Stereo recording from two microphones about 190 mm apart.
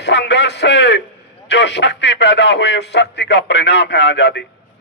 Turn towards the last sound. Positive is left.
turn(degrees=65)  # may be behind; listen again after turning